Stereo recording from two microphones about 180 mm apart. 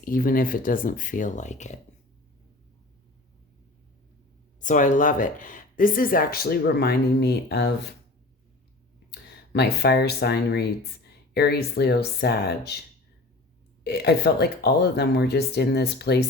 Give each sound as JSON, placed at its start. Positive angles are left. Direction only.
{"t": 0.0, "sound": "speech", "side_deg": 50}
{"t": 4.6, "sound": "speech", "side_deg": 45}
{"t": 9.0, "sound": "speech", "side_deg": 65}
{"t": 13.8, "sound": "speech", "side_deg": 65}